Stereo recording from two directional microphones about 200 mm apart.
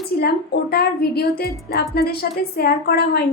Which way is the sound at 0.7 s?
50° left (ahead or behind).